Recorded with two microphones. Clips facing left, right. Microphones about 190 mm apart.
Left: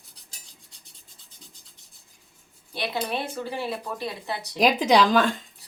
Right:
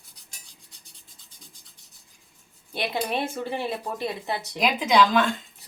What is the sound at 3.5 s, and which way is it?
Speech, 20° right (ahead or behind).